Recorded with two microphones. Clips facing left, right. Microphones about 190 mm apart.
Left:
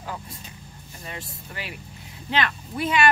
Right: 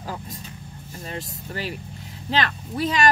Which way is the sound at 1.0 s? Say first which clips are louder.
Right 4 dB; 40° right (ahead or behind).